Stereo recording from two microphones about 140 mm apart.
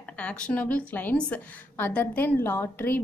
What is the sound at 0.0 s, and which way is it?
A woman's voice, 10° left (ahead or behind).